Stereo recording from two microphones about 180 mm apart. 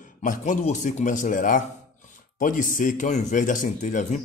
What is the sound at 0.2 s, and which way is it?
A man's voice, 45° left (ahead or behind).